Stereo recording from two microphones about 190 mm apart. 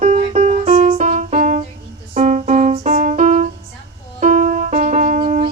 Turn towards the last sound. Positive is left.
turn(degrees=-40)  # may be behind; listen again after turning